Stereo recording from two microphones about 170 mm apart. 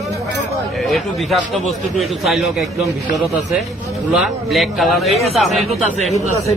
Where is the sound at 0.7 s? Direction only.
Centre (ahead or behind).